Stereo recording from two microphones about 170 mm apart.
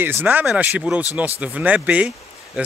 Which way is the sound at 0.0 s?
10° right (ahead or behind).